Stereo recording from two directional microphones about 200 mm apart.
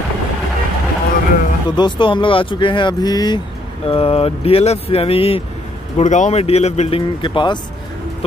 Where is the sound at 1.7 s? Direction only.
20° left (ahead or behind).